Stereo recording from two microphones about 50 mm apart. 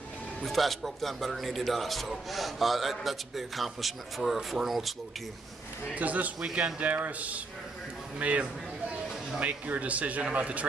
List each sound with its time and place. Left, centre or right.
0.4 s a man's voice: centre
5.9 s speech: right